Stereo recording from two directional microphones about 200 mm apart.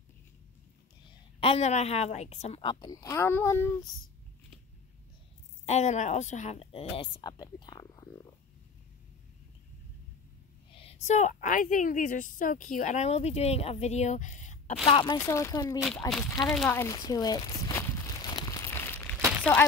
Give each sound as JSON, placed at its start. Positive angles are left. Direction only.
{"t": 1.4, "sound": "a woman's voice", "side_deg": 30}
{"t": 5.7, "sound": "a woman's voice", "side_deg": 35}
{"t": 10.8, "sound": "a woman's voice", "side_deg": 30}
{"t": 14.9, "sound": "a woman's voice", "side_deg": 25}
{"t": 15.1, "sound": "speech", "side_deg": 15}
{"t": 16.3, "sound": "a sound", "side_deg": 0}